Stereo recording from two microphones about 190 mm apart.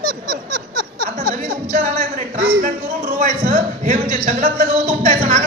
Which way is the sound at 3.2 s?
40° right (ahead or behind).